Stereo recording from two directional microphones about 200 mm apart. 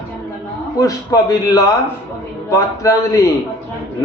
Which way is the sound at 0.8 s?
15° left (ahead or behind).